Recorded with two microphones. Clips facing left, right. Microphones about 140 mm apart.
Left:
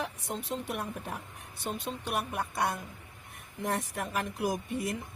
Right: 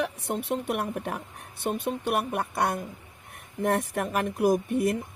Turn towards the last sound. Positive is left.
turn(degrees=-60)  # may be behind; listen again after turning